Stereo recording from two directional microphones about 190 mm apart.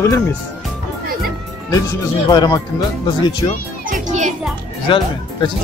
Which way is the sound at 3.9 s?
40° right (ahead or behind).